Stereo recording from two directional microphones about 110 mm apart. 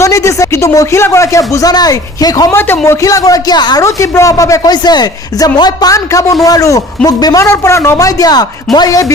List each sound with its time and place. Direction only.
0.0 s speech: 30° left (ahead or behind)
2.5 s speech: 20° left (ahead or behind); by 3.8 s 40° left (ahead or behind)
3.8 s speech: 25° left (ahead or behind)
7.4 s speech: 25° left (ahead or behind)